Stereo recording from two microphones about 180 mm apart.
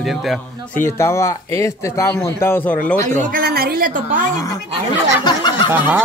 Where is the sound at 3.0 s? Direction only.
55° right (ahead or behind).